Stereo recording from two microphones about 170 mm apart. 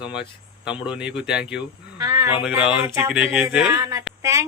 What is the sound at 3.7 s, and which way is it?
Speech, 15° right (ahead or behind).